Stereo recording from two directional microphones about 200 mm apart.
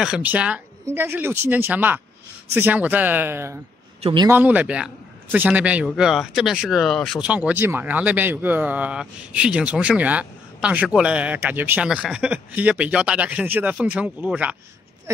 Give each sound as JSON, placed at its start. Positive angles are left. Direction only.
{"t": 0.0, "sound": "a man's voice", "side_deg": -5}
{"t": 4.0, "sound": "speech", "side_deg": -25}
{"t": 4.3, "sound": "a man's voice", "side_deg": -10}